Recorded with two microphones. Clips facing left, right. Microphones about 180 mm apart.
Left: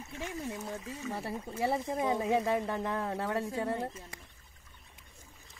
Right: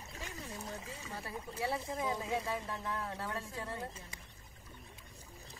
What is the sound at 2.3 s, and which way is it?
Speech, 65° left (ahead or behind).